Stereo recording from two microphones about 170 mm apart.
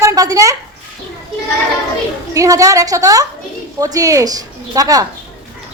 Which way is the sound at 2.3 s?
20° right (ahead or behind).